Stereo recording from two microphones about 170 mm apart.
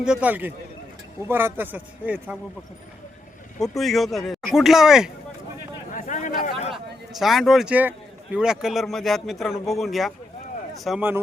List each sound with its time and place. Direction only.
0.0 s speech: 5° right (ahead or behind)
3.6 s speech: centre (ahead or behind)
5.9 s a sound: 50° left (ahead or behind)
7.1 s speech: centre (ahead or behind)